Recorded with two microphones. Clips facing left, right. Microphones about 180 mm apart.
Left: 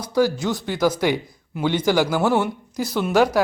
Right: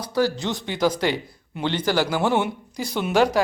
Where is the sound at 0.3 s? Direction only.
5° left (ahead or behind).